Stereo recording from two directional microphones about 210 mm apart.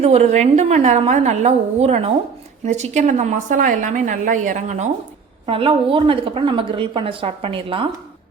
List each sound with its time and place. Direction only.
0.0 s a woman's voice: 30° right (ahead or behind)